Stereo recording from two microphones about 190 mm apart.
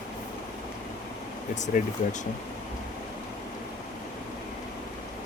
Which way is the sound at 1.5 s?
40° left (ahead or behind).